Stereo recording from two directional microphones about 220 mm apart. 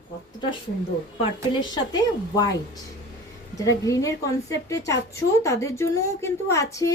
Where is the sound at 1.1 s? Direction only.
20° left (ahead or behind).